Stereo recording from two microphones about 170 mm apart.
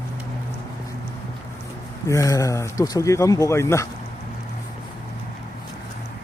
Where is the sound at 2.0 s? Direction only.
20° left (ahead or behind).